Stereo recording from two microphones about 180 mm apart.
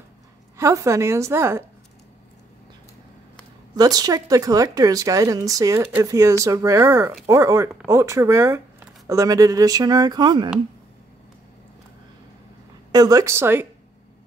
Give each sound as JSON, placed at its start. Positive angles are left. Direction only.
{"t": 0.6, "sound": "speech", "side_deg": -15}
{"t": 3.7, "sound": "speech", "side_deg": -20}
{"t": 12.9, "sound": "speech", "side_deg": -20}